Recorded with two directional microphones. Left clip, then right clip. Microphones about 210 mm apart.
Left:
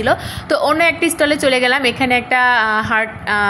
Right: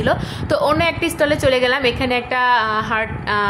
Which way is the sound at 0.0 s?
15° left (ahead or behind).